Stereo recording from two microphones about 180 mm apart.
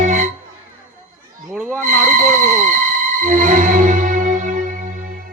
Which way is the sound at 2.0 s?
45° right (ahead or behind).